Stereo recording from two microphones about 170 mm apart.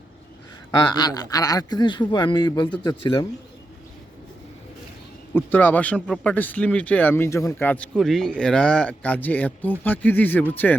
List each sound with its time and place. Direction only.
0.7 s speech: 25° left (ahead or behind)
5.3 s speech: 10° left (ahead or behind)